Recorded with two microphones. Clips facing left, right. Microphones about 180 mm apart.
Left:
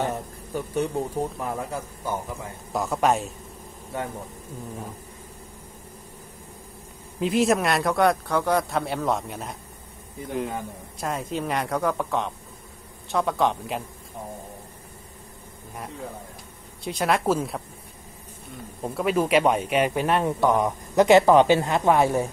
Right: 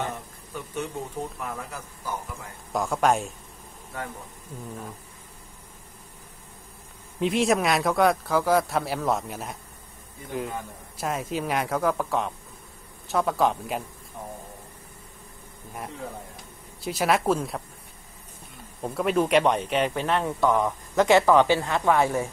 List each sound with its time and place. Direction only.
0.7 s speech: 35° left (ahead or behind)
2.7 s speech: centre (ahead or behind)
3.9 s speech: 25° left (ahead or behind)
7.2 s speech: centre (ahead or behind)
11.0 s speech: centre (ahead or behind)
16.8 s speech: centre (ahead or behind)
18.8 s speech: centre (ahead or behind); by 22.3 s 20° left (ahead or behind)